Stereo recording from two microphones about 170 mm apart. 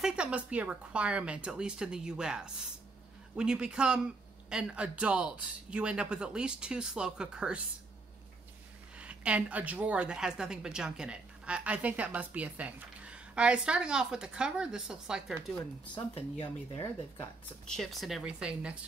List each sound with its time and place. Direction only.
0.0 s a woman's voice: 5° right (ahead or behind)
8.9 s a woman's voice: 5° right (ahead or behind)
15.9 s speech: 30° left (ahead or behind)
17.6 s a woman's voice: centre (ahead or behind)